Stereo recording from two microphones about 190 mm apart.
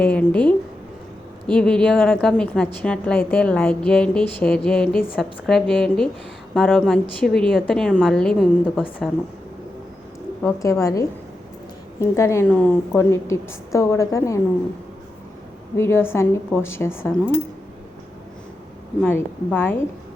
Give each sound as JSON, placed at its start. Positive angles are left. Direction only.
{"t": 0.0, "sound": "a woman's voice", "side_deg": 5}
{"t": 10.4, "sound": "a woman's voice", "side_deg": 15}
{"t": 15.8, "sound": "a woman's voice", "side_deg": 15}
{"t": 19.5, "sound": "a woman's voice", "side_deg": 10}